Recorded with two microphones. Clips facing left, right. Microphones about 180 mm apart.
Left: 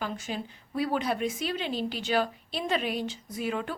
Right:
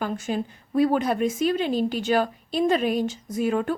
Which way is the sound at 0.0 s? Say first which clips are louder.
Right 7 dB; 50° right (ahead or behind).